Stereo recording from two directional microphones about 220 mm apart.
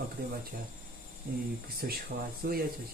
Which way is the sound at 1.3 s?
40° right (ahead or behind).